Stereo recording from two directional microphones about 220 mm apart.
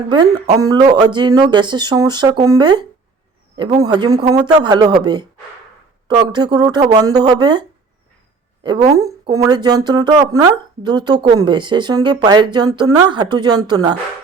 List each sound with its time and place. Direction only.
0.1 s speech: 20° right (ahead or behind)
8.6 s speech: 20° right (ahead or behind)